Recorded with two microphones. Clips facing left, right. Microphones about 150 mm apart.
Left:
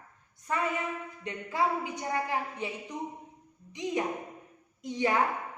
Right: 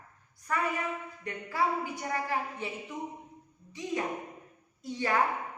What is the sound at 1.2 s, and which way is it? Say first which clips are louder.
A woman's voice: left 1 dB; 20° left (ahead or behind).